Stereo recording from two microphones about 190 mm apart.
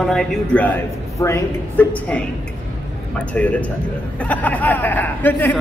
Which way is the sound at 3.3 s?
5° left (ahead or behind).